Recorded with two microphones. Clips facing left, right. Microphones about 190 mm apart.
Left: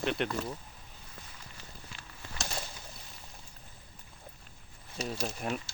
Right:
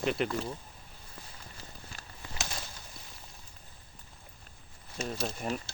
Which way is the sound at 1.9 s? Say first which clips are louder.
Right 1 dB; 45° right (ahead or behind).